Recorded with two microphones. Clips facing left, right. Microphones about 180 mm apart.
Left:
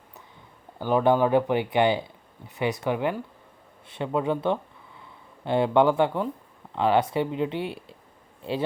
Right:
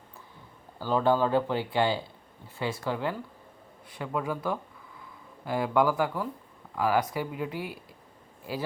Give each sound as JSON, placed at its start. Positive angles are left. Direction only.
{"t": 0.8, "sound": "speech", "side_deg": 20}